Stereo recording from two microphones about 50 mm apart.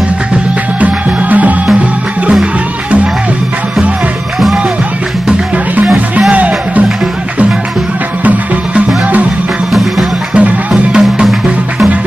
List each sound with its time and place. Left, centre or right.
0.7 s music: right
6.3 s music: right
8.2 s music: right
9.7 s music: centre
10.7 s music: centre